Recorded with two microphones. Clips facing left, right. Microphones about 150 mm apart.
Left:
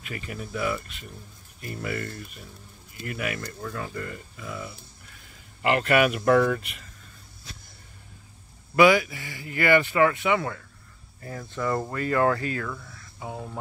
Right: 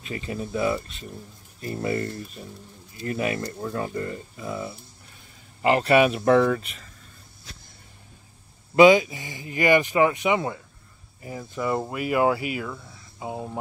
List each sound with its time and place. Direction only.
0.0 s speech: 25° right (ahead or behind)
8.7 s speech: 20° right (ahead or behind)